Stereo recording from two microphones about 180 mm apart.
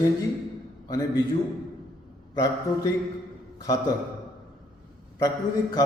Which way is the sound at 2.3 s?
20° left (ahead or behind).